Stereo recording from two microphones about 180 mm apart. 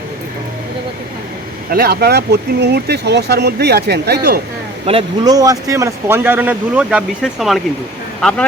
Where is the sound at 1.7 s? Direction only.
60° right (ahead or behind).